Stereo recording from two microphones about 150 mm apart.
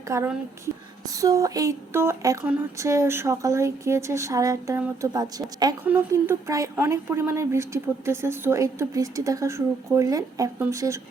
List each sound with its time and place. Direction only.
0.1 s speech: 20° right (ahead or behind)
5.8 s speech: 15° right (ahead or behind)